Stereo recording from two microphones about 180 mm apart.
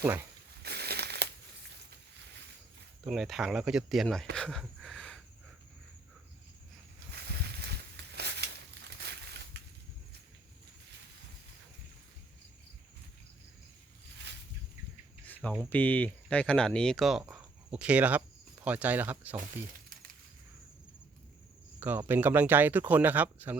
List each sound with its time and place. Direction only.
0.0 s speech: 10° right (ahead or behind)
0.6 s crumpling: 65° right (ahead or behind)
3.1 s speech: centre (ahead or behind)
4.4 s a sound: 5° left (ahead or behind)
7.1 s a sound: 65° right (ahead or behind)
15.7 s speech: 10° left (ahead or behind); by 19.4 s 10° right (ahead or behind)
21.8 s speech: 10° right (ahead or behind)